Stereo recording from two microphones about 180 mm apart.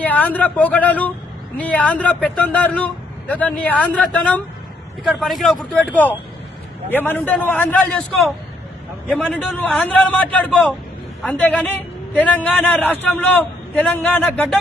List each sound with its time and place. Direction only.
0.0 s a man's voice: 10° left (ahead or behind)